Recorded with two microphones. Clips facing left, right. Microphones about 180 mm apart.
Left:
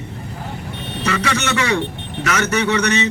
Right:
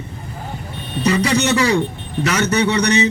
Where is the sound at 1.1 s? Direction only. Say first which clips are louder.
Right 4 dB; 35° right (ahead or behind).